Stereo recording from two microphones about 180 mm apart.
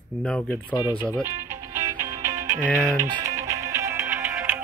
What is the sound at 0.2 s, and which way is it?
Speech, 5° left (ahead or behind).